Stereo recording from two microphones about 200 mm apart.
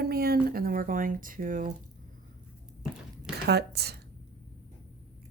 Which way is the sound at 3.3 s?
55° right (ahead or behind).